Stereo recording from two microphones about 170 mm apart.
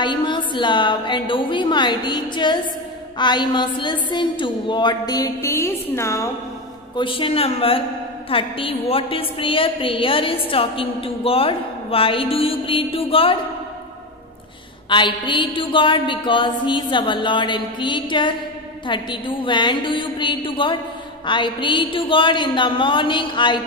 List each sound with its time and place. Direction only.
0.0 s a woman's voice: 25° left (ahead or behind)
7.0 s a woman's voice: 30° left (ahead or behind)
14.9 s a woman's voice: 30° left (ahead or behind)